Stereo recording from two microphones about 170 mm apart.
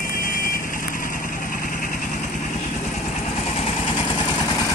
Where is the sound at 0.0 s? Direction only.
55° left (ahead or behind).